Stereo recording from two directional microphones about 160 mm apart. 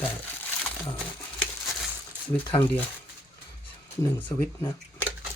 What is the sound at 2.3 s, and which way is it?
Speech, 10° left (ahead or behind).